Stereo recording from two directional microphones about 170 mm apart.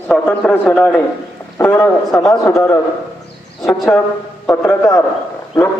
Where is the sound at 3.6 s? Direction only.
Centre (ahead or behind).